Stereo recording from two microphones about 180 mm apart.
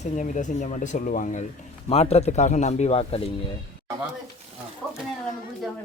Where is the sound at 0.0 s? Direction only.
45° left (ahead or behind).